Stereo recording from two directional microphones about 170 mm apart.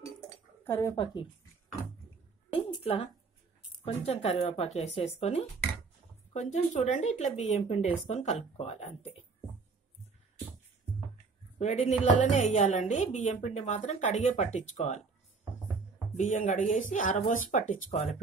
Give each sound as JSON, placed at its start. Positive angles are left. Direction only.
{"t": 0.7, "sound": "speech", "side_deg": 15}
{"t": 2.5, "sound": "a sound", "side_deg": 35}
{"t": 3.8, "sound": "speech", "side_deg": 35}
{"t": 11.5, "sound": "a woman's voice", "side_deg": 45}
{"t": 16.2, "sound": "a woman's voice", "side_deg": 45}